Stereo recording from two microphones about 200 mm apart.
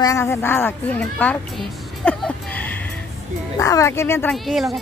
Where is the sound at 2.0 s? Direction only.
5° left (ahead or behind).